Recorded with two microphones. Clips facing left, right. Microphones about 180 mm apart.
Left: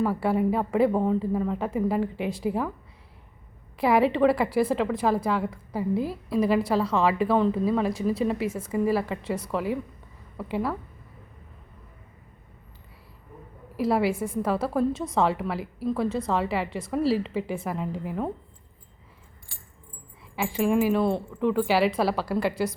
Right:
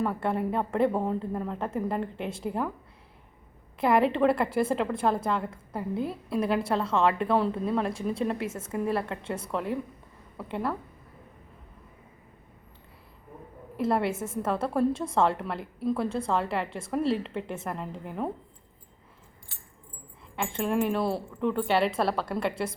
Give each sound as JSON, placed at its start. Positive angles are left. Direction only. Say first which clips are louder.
{"t": 0.0, "sound": "speech", "louder": "left 4 dB", "side_deg": 5}
{"t": 3.8, "sound": "a woman's voice", "louder": "left 2 dB", "side_deg": 0}
{"t": 13.7, "sound": "speech", "louder": "left 3 dB", "side_deg": 5}
{"t": 14.1, "sound": "a woman's voice", "louder": "left 4 dB", "side_deg": -25}
{"t": 14.4, "sound": "speech", "louder": "left 1 dB", "side_deg": 0}
{"t": 20.3, "sound": "speech", "louder": "left 4 dB", "side_deg": 5}